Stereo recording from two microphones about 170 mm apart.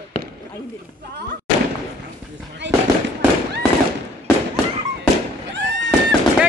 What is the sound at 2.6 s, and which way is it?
Fireworks, 90° right.